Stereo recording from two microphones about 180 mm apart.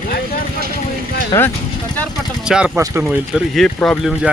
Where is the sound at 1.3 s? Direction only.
15° left (ahead or behind).